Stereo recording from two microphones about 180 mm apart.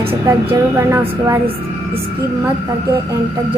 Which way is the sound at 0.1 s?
15° right (ahead or behind).